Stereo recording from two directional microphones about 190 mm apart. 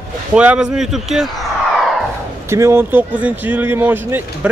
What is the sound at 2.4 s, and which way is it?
A man's voice, 15° right (ahead or behind).